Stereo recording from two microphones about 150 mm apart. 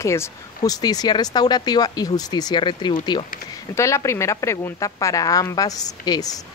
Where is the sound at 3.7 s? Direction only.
20° left (ahead or behind).